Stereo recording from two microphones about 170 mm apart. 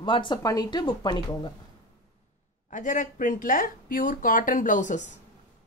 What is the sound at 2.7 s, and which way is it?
Speech, 50° left (ahead or behind).